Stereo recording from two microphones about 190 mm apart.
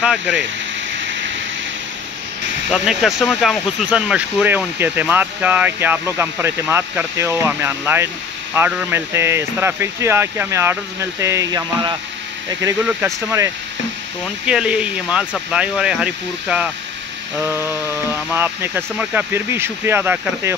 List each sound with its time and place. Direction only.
0.0 s speech: 5° right (ahead or behind)
2.7 s speech: centre (ahead or behind)